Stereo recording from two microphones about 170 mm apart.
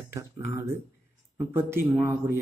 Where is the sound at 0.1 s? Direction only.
15° right (ahead or behind).